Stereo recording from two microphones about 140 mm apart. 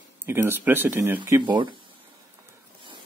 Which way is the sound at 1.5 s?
35° right (ahead or behind).